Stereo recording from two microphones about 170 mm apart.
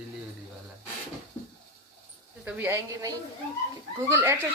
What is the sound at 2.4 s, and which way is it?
Speech, 10° right (ahead or behind).